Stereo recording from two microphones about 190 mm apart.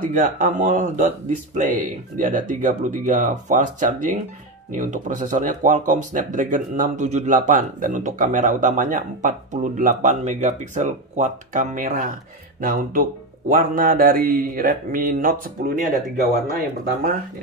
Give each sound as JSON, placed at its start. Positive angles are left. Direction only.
{"t": 0.0, "sound": "speech", "side_deg": -45}